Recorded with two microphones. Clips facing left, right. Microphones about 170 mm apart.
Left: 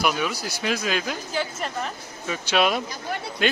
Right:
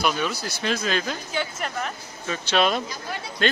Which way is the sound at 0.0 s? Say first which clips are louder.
Even; 10° left (ahead or behind).